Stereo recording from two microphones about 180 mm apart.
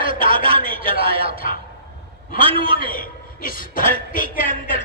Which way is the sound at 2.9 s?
50° left (ahead or behind).